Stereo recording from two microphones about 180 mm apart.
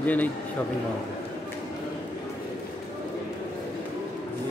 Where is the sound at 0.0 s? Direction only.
10° left (ahead or behind).